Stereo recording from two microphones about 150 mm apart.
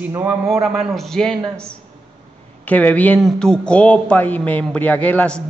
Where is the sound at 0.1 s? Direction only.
20° right (ahead or behind).